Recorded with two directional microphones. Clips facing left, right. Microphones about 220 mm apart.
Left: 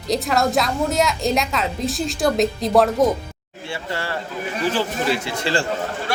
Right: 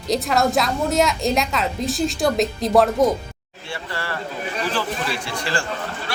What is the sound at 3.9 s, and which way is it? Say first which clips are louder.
Speech: left 2 dB; 20° left (ahead or behind).